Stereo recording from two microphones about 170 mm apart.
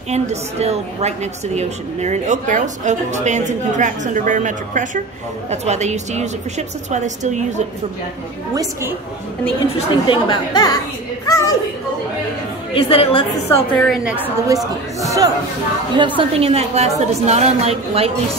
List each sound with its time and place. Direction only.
0.1 s a woman's voice: 40° right (ahead or behind)
9.8 s speech: 30° left (ahead or behind)
11.2 s a sound: 20° left (ahead or behind)
12.7 s a woman's voice: 35° left (ahead or behind)
13.7 s a woman's voice: centre (ahead or behind)
15.0 s chatter: 20° right (ahead or behind)
16.2 s a woman's voice: 35° right (ahead or behind)